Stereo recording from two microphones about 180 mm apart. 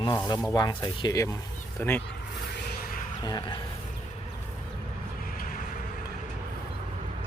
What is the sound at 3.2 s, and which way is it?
Speech, 20° left (ahead or behind).